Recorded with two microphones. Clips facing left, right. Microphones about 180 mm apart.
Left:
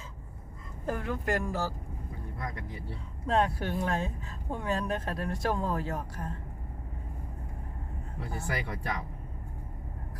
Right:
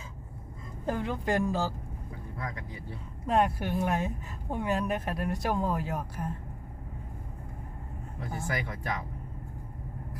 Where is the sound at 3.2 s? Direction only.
10° right (ahead or behind).